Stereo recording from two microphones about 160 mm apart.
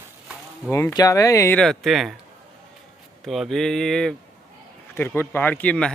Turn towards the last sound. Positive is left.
turn(degrees=5)  # may be behind; listen again after turning